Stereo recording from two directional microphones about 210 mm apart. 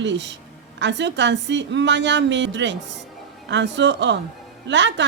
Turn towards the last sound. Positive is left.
turn(degrees=-60)  # may be behind; listen again after turning